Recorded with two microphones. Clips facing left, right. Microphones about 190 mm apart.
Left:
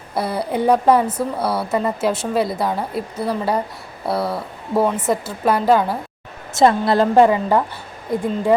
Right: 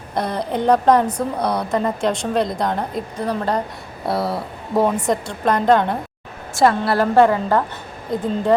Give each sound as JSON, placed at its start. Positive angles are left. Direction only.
{"t": 0.1, "sound": "a woman's voice", "side_deg": 5}
{"t": 6.5, "sound": "a woman's voice", "side_deg": 20}